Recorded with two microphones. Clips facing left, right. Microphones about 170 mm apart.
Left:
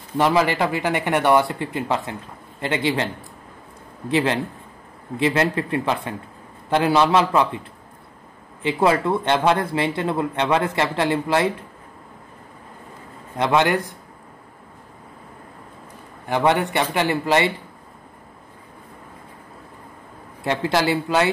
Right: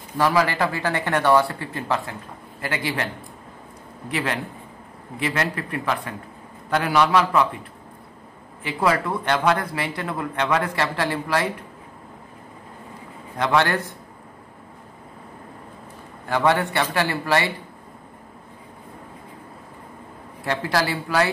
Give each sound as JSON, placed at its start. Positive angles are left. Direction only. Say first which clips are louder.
{"t": 0.2, "sound": "speech", "louder": "left 2 dB", "side_deg": 20}
{"t": 4.1, "sound": "speech", "louder": "left 6 dB", "side_deg": 25}
{"t": 8.6, "sound": "speech", "louder": "left 4 dB", "side_deg": 25}
{"t": 13.4, "sound": "a man's voice", "louder": "left 2 dB", "side_deg": 20}
{"t": 16.3, "sound": "speech", "louder": "left 1 dB", "side_deg": 20}
{"t": 20.4, "sound": "speech", "louder": "left 3 dB", "side_deg": 20}